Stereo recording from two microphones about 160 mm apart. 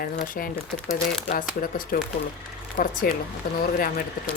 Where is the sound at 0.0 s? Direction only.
65° left (ahead or behind).